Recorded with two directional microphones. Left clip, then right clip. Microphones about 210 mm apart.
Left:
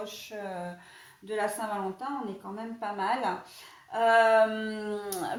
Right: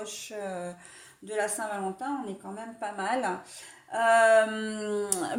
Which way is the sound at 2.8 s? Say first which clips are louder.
Even; 45° right (ahead or behind).